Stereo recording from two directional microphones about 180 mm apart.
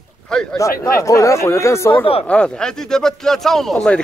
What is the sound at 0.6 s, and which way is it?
Speech, 15° left (ahead or behind).